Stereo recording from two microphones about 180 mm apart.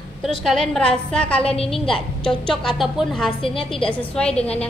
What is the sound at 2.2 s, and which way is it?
A woman's voice, 5° left (ahead or behind).